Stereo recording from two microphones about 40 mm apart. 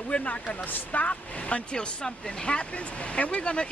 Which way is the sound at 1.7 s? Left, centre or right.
Left.